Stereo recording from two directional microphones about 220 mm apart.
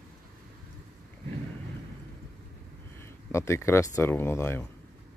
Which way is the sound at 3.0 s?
15° left (ahead or behind).